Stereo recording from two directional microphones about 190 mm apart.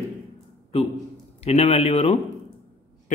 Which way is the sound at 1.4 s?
35° left (ahead or behind).